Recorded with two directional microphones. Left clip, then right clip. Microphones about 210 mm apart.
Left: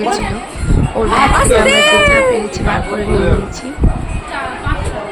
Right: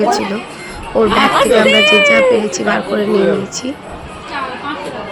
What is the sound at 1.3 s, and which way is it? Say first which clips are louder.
Speech: right 1 dB; centre (ahead or behind).